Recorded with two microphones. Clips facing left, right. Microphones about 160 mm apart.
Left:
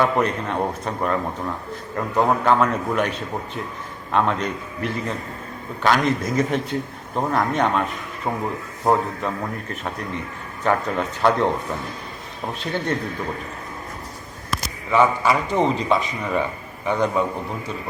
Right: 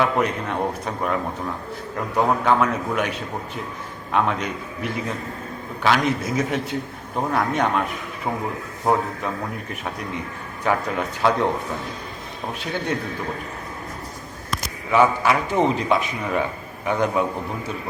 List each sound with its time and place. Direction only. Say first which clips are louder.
0.0 s a man's voice: left 1 dB; 5° right (ahead or behind)
2.2 s a man's voice: left 1 dB; centre (ahead or behind)
12.5 s a man's voice: left 1 dB; 5° right (ahead or behind)
14.5 s a man's voice: even; centre (ahead or behind)